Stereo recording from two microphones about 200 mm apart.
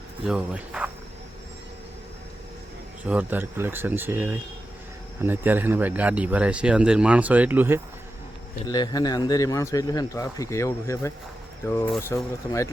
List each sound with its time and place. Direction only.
0.3 s speech: 5° right (ahead or behind)
3.1 s speech: 10° right (ahead or behind)
8.6 s speech: 20° left (ahead or behind)